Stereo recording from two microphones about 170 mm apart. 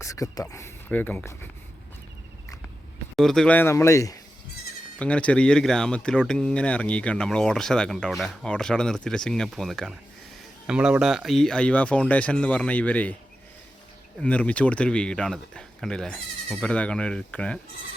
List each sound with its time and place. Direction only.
0.0 s speech: 20° left (ahead or behind)
3.2 s speech: centre (ahead or behind); by 4.2 s 20° left (ahead or behind)
4.9 s speech: 5° left (ahead or behind)
14.2 s speech: 10° left (ahead or behind)